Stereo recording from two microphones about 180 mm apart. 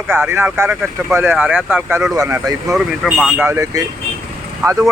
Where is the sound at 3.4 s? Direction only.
15° right (ahead or behind).